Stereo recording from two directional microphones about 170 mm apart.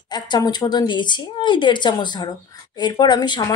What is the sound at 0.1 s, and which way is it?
Speech, 25° left (ahead or behind).